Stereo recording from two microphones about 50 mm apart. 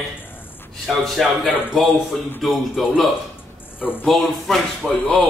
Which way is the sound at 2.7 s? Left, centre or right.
Centre.